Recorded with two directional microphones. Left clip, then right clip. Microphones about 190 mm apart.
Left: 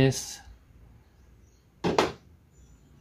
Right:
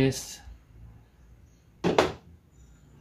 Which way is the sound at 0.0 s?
40° left (ahead or behind).